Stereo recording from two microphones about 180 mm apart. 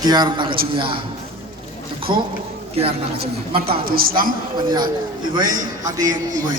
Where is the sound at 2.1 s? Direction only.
25° right (ahead or behind).